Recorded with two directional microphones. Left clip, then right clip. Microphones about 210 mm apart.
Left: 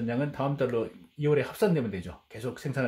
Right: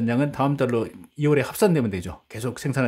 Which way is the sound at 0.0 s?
40° right (ahead or behind).